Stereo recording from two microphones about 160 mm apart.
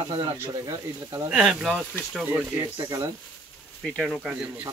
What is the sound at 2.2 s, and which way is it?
Speech, 15° right (ahead or behind).